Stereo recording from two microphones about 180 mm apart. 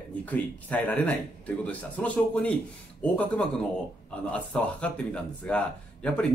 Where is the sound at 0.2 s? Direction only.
10° left (ahead or behind).